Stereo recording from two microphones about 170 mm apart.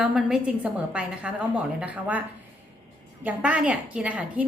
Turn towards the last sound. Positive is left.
turn(degrees=-10)  # may be behind; listen again after turning